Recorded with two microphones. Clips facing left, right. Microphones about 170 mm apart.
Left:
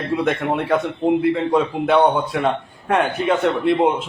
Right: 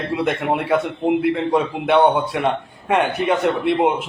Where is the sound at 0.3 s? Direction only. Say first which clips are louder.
Right 1 dB; 5° right (ahead or behind).